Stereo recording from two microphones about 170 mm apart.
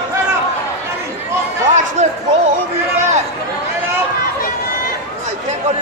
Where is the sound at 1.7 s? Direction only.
40° right (ahead or behind).